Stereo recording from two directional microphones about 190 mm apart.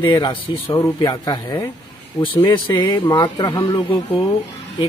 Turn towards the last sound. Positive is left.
turn(degrees=20)  # may be behind; listen again after turning